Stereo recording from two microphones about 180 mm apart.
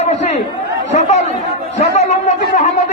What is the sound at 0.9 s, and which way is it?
Chatter, 40° left (ahead or behind).